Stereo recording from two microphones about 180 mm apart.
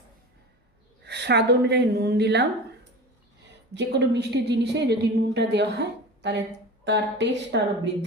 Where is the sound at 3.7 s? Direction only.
70° right (ahead or behind).